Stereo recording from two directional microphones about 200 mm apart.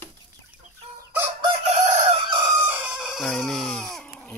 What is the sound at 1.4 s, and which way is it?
Crowing, 30° right (ahead or behind).